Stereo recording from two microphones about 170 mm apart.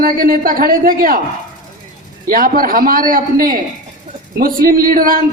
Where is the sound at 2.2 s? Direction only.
55° right (ahead or behind).